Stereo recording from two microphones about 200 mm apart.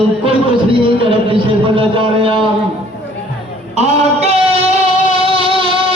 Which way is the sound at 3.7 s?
30° right (ahead or behind).